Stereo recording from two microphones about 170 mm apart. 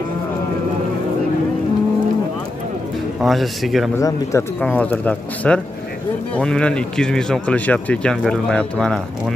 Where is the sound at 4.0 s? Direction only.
20° left (ahead or behind).